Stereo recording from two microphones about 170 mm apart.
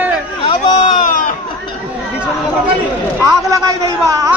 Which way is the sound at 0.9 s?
50° left (ahead or behind).